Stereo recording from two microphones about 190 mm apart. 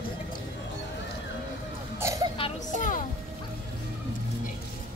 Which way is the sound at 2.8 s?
45° left (ahead or behind).